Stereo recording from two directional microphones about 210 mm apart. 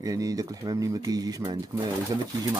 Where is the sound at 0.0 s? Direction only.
15° right (ahead or behind).